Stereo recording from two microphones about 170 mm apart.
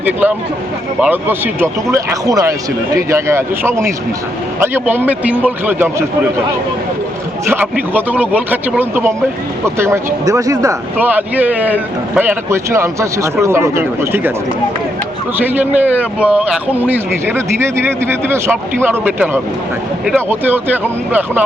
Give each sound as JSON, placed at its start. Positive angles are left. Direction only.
{"t": 0.0, "sound": "speech", "side_deg": -10}
{"t": 7.5, "sound": "speech", "side_deg": -10}
{"t": 10.9, "sound": "speech", "side_deg": -10}
{"t": 15.4, "sound": "speech", "side_deg": -10}